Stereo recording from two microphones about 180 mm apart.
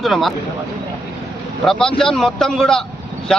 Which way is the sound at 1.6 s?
Centre (ahead or behind).